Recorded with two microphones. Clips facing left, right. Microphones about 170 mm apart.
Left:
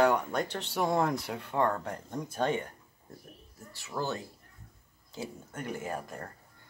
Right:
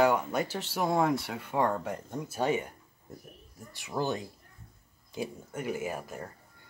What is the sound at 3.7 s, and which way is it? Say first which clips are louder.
Speech: right 3 dB; 15° right (ahead or behind).